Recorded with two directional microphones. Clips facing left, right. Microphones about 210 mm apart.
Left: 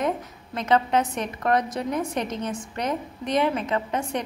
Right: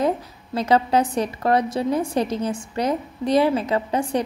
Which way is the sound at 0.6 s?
35° right (ahead or behind).